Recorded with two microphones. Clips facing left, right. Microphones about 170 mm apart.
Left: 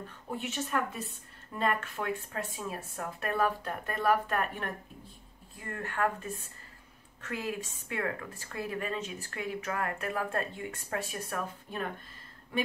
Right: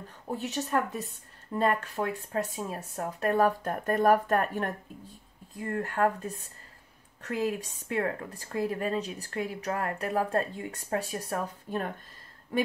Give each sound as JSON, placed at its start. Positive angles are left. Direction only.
{"t": 0.4, "sound": "a woman's voice", "side_deg": -40}